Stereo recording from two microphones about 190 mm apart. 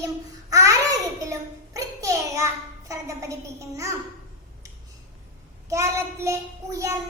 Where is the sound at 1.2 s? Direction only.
15° right (ahead or behind).